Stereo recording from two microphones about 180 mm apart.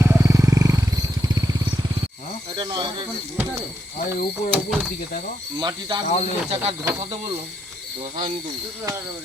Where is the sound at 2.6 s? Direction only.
25° right (ahead or behind).